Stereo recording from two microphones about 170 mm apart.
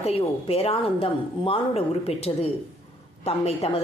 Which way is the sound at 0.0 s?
35° left (ahead or behind).